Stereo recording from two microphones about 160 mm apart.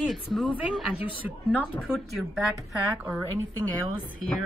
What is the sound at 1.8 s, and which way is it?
Speech, 5° right (ahead or behind).